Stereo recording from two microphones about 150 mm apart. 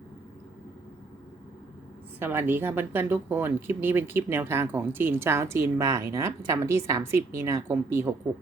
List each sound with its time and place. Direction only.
2.1 s speech: 15° right (ahead or behind)